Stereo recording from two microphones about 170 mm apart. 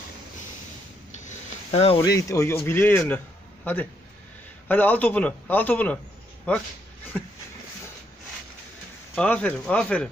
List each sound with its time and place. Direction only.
1.2 s a sound: 35° left (ahead or behind)
2.0 s a man's voice: 20° left (ahead or behind)
9.1 s a man's voice: 5° left (ahead or behind)